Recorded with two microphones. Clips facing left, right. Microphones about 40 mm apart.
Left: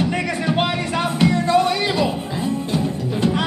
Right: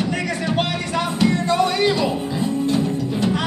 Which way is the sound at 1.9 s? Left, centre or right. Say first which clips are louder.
Right 1 dB; centre.